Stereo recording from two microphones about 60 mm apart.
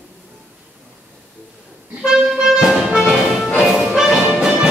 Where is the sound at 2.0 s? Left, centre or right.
Centre.